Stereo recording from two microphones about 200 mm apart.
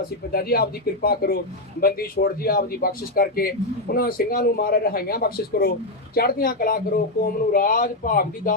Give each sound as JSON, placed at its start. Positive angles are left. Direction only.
{"t": 0.3, "sound": "speech", "side_deg": 50}